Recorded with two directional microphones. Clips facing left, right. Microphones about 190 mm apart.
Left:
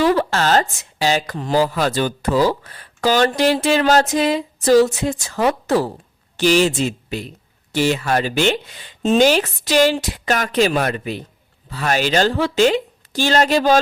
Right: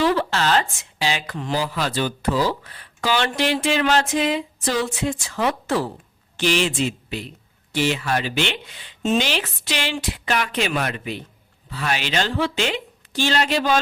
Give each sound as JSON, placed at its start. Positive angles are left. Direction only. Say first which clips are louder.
{"t": 0.0, "sound": "a woman's voice", "louder": "left 3 dB", "side_deg": 45}